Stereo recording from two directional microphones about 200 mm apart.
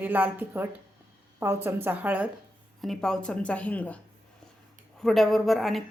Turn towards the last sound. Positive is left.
turn(degrees=0)  # may be behind; listen again after turning